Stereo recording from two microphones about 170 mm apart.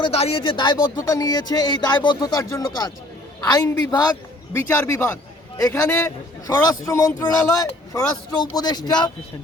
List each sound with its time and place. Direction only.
0.0 s a man's voice: 35° left (ahead or behind)